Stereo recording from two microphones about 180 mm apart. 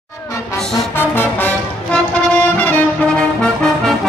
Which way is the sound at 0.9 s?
10° left (ahead or behind).